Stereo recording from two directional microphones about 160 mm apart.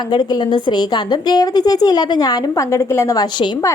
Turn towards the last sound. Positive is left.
turn(degrees=20)  # may be behind; listen again after turning